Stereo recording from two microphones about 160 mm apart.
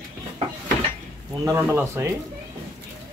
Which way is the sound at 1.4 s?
15° right (ahead or behind).